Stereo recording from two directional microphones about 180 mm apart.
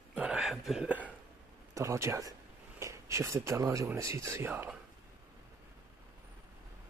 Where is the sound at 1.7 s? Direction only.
15° right (ahead or behind).